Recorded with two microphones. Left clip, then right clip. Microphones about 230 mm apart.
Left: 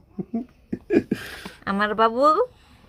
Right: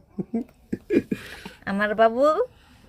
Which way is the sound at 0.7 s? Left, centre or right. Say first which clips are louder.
Left 2 dB; left.